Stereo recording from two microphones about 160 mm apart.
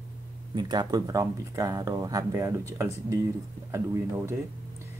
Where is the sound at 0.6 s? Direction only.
25° right (ahead or behind).